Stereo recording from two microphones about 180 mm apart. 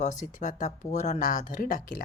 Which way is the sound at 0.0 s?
45° left (ahead or behind).